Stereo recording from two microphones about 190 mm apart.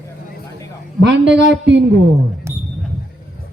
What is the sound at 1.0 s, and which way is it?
Speech, 70° right (ahead or behind).